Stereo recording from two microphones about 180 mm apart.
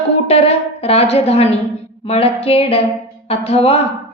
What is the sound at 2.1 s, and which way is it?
A woman's voice, 35° left (ahead or behind).